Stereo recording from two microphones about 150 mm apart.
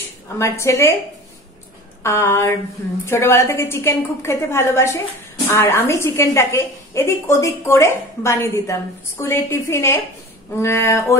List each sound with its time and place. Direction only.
0.4 s a woman's voice: 20° left (ahead or behind)
2.0 s a woman's voice: 20° left (ahead or behind)